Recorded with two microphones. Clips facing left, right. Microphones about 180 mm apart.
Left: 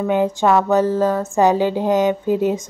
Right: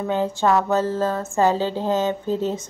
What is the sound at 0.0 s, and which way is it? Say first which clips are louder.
A woman's voice: left 4 dB; 15° left (ahead or behind).